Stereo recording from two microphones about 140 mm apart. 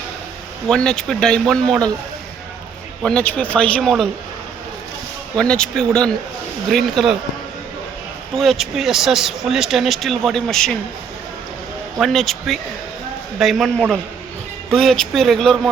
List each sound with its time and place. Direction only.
0.7 s speech: 5° left (ahead or behind)
3.0 s a man's voice: 10° left (ahead or behind)
5.4 s speech: 5° left (ahead or behind)
8.4 s speech: centre (ahead or behind)
11.9 s speech: centre (ahead or behind)